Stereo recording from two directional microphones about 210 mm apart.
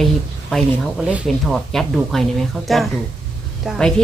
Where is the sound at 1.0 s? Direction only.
5° right (ahead or behind).